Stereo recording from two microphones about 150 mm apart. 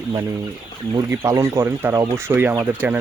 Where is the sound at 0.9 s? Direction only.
20° right (ahead or behind).